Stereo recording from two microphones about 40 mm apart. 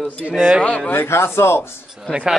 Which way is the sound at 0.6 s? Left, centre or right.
Left.